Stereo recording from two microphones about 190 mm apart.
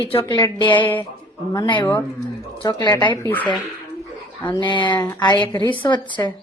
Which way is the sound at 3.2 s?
15° left (ahead or behind).